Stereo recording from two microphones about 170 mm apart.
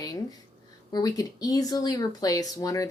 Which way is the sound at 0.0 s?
20° left (ahead or behind).